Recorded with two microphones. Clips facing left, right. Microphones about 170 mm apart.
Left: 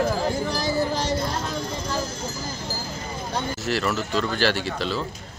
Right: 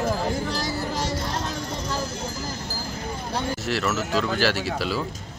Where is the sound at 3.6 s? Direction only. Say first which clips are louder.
Left 1 dB; centre (ahead or behind).